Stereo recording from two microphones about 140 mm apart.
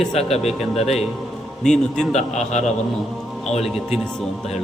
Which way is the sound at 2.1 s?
55° left (ahead or behind).